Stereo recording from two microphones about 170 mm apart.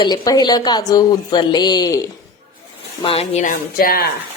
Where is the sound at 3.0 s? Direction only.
35° left (ahead or behind); by 4.1 s 60° left (ahead or behind).